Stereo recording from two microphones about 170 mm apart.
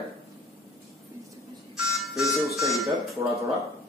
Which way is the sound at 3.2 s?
20° right (ahead or behind).